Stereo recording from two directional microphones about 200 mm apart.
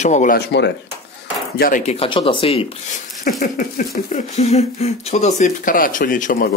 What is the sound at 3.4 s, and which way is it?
Speech, 45° left (ahead or behind).